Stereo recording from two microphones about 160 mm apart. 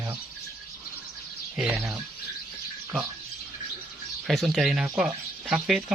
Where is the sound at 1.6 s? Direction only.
10° right (ahead or behind).